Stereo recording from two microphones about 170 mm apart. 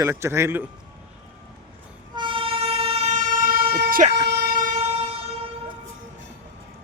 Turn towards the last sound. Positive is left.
turn(degrees=-35)  # may be behind; listen again after turning